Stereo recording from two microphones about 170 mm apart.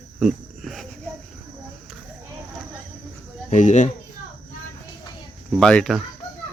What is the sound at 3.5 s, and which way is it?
Speech, 45° left (ahead or behind).